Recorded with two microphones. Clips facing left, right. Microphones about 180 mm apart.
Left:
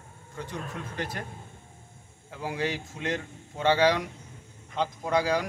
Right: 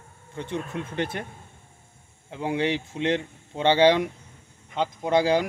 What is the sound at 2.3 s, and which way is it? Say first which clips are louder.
Speech: right 5 dB; 25° right (ahead or behind).